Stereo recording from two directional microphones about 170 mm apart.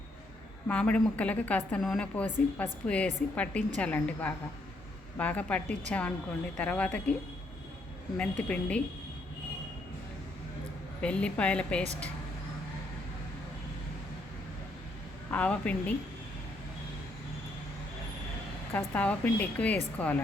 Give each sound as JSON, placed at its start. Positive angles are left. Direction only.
{"t": 0.7, "sound": "a woman's voice", "side_deg": 10}
{"t": 8.2, "sound": "a woman's voice", "side_deg": 10}
{"t": 11.0, "sound": "a woman's voice", "side_deg": 5}
{"t": 15.3, "sound": "a woman's voice", "side_deg": 10}
{"t": 18.7, "sound": "a woman's voice", "side_deg": 10}